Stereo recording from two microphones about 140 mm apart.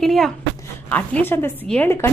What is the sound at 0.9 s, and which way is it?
A woman's voice, 15° left (ahead or behind).